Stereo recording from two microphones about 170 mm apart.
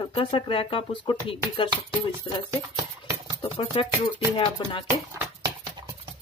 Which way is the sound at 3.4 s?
30° left (ahead or behind).